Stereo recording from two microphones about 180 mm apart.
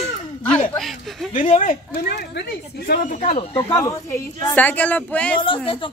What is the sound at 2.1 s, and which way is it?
Speech, 65° left (ahead or behind).